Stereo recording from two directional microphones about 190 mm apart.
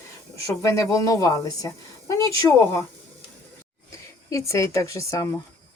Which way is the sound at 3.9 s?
15° left (ahead or behind).